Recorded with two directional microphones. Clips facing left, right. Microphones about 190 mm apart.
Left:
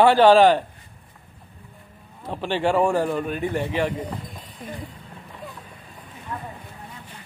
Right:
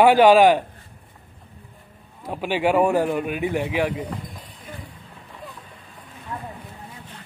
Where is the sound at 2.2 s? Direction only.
10° right (ahead or behind).